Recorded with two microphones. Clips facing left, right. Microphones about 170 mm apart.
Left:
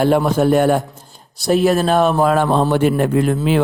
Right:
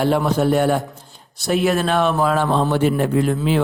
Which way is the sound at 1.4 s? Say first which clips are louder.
Left 4 dB; 35° left (ahead or behind).